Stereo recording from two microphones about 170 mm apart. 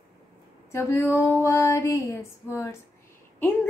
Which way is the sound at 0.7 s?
15° left (ahead or behind).